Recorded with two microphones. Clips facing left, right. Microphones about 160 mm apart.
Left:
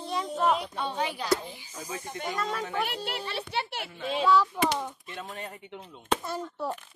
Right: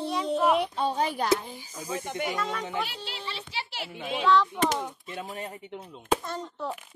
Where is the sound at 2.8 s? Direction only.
60° left (ahead or behind).